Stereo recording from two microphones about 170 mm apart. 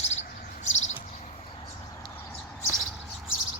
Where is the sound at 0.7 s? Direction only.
40° left (ahead or behind).